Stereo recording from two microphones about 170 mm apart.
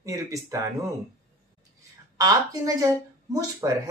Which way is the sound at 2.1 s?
20° right (ahead or behind).